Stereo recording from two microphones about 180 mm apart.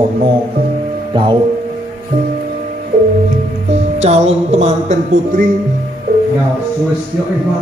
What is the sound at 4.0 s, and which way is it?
Speech, 35° right (ahead or behind).